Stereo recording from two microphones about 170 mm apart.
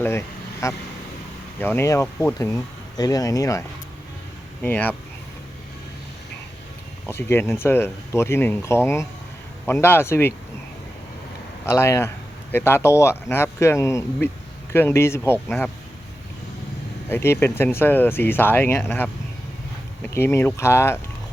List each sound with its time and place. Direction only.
0.0 s honk: 15° left (ahead or behind)
1.6 s speech: 15° left (ahead or behind)
4.6 s speech: 10° left (ahead or behind)
7.1 s speech: 15° left (ahead or behind)
11.6 s speech: 15° left (ahead or behind)
17.1 s speech: 15° left (ahead or behind)